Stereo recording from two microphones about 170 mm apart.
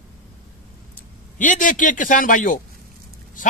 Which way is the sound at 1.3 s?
50° left (ahead or behind).